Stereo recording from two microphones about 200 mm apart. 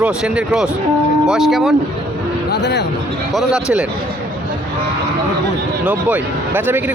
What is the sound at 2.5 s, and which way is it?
Speech, 55° left (ahead or behind).